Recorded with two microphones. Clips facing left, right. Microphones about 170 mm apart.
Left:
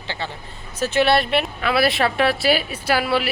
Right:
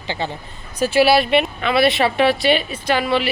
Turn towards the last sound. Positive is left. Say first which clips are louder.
# right 2 dB
turn(degrees=5)  # may be behind; listen again after turning